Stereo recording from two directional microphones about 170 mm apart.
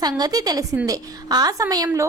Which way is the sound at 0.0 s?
20° right (ahead or behind).